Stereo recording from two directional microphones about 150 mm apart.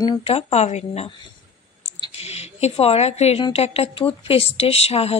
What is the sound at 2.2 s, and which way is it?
A woman's voice, 45° left (ahead or behind).